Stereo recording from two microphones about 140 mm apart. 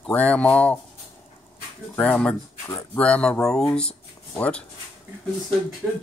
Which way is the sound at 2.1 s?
5° left (ahead or behind).